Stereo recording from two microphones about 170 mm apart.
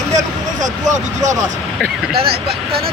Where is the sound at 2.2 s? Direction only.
65° right (ahead or behind).